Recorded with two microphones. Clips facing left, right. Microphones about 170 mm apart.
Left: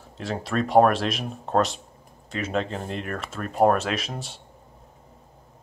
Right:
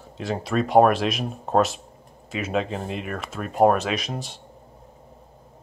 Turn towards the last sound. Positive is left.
turn(degrees=0)  # may be behind; listen again after turning